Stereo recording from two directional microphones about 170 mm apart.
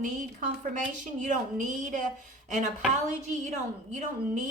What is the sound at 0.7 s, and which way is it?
A woman's voice, 50° right (ahead or behind).